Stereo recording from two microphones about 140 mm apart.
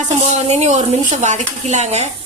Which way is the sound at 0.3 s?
50° right (ahead or behind).